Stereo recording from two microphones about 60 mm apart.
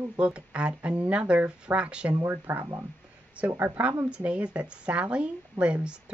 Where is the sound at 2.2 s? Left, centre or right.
Right.